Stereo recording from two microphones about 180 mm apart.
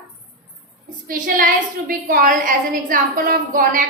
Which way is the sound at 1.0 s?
50° right (ahead or behind).